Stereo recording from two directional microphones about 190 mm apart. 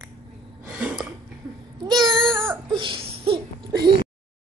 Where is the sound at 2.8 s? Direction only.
25° right (ahead or behind).